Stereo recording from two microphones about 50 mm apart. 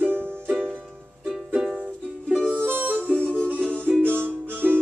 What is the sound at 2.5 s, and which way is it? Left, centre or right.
Music, right.